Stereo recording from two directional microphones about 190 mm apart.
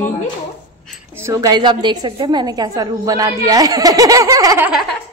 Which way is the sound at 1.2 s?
15° right (ahead or behind).